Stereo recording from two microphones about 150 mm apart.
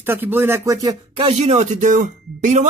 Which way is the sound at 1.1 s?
40° right (ahead or behind).